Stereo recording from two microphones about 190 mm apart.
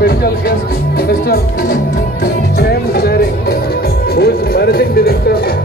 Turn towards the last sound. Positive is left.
turn(degrees=55)  # may be behind; listen again after turning